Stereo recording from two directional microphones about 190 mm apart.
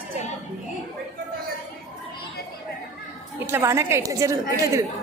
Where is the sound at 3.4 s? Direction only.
15° right (ahead or behind).